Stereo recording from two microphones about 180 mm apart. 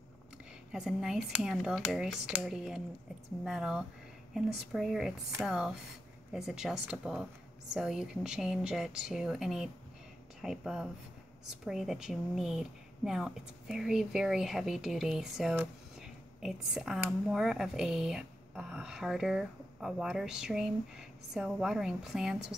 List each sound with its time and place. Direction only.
0.7 s speech: 5° right (ahead or behind)